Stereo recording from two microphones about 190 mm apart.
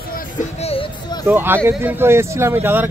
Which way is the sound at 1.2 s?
10° right (ahead or behind).